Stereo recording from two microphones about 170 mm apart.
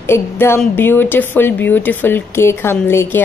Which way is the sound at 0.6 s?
10° left (ahead or behind).